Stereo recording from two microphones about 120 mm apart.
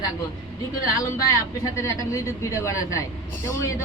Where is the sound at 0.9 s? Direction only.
30° left (ahead or behind).